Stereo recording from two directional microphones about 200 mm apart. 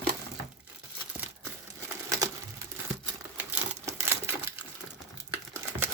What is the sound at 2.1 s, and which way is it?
Sewing machine, 15° right (ahead or behind).